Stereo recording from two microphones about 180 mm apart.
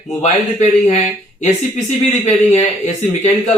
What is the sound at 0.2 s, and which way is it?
Speech, 35° left (ahead or behind).